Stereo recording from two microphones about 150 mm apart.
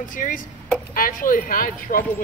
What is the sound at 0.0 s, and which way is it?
A woman's voice, 65° left (ahead or behind).